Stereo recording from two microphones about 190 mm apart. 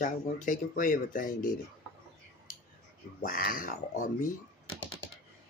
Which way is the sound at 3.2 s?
45° left (ahead or behind).